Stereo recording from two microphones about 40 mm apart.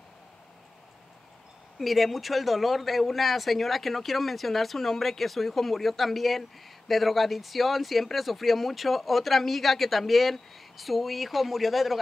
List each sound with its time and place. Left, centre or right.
1.8 s speech: centre